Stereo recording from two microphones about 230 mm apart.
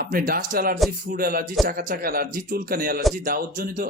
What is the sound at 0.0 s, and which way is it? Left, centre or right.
Speech, right.